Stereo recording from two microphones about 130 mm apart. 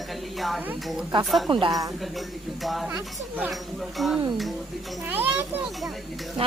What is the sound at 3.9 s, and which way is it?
Speech, centre (ahead or behind).